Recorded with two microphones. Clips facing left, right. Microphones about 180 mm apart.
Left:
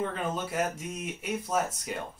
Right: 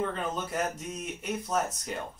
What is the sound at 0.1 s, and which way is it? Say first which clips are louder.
Speech: left 1 dB; 5° left (ahead or behind).